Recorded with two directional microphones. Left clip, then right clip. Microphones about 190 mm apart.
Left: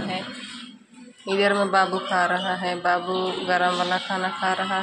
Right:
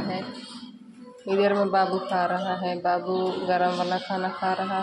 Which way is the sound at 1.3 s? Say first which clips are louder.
Left 1 dB; 10° right (ahead or behind).